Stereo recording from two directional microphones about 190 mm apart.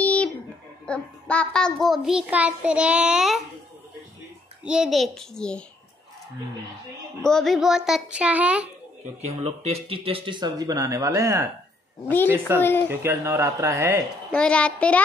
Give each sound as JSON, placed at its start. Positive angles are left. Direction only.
{"t": 0.0, "sound": "a sound", "side_deg": 5}
{"t": 0.8, "sound": "a child's voice", "side_deg": 5}
{"t": 4.6, "sound": "a child's voice", "side_deg": -5}
{"t": 7.2, "sound": "a child's voice", "side_deg": 0}
{"t": 9.2, "sound": "speech", "side_deg": -35}
{"t": 12.5, "sound": "speech", "side_deg": 10}
{"t": 13.0, "sound": "speech", "side_deg": -15}
{"t": 14.3, "sound": "a child's voice", "side_deg": 5}